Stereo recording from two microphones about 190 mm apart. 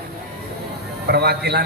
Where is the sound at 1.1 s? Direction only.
60° right (ahead or behind).